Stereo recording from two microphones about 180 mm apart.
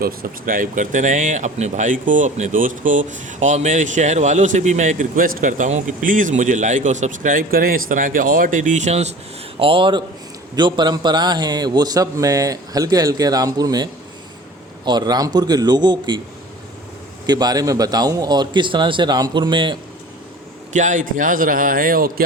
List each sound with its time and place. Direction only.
0.0 s a man's voice: 55° right (ahead or behind); by 16.2 s 25° right (ahead or behind)
17.2 s a man's voice: 20° right (ahead or behind)
20.7 s speech: 45° right (ahead or behind)